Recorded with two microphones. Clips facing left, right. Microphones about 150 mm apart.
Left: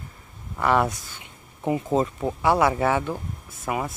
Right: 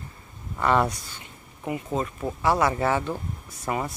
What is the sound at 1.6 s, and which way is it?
Speech, 30° left (ahead or behind).